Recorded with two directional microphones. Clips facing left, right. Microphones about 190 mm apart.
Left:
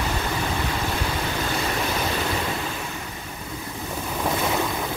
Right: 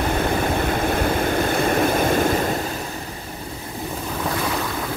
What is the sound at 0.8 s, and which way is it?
Vehicle, 55° right (ahead or behind).